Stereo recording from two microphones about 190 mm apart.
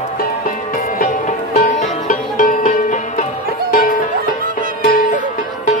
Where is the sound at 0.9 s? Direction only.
45° left (ahead or behind).